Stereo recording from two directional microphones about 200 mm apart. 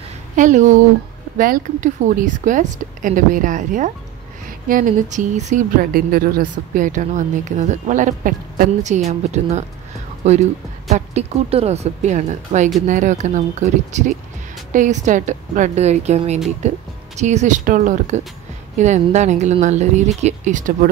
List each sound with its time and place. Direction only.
0.4 s speech: 40° right (ahead or behind)
10.9 s speech: 30° right (ahead or behind)